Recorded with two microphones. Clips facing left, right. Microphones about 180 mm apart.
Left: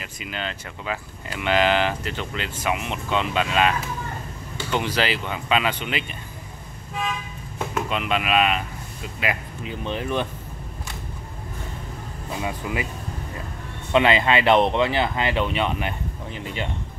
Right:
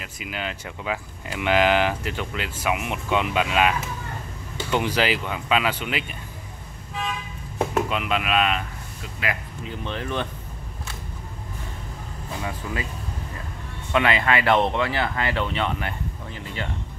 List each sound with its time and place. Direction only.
0.0 s speech: 5° right (ahead or behind)
4.7 s speech: 10° right (ahead or behind)
7.9 s speech: centre (ahead or behind)
9.8 s speech: 15° left (ahead or behind)
12.4 s speech: 15° left (ahead or behind)
13.9 s speech: 25° left (ahead or behind)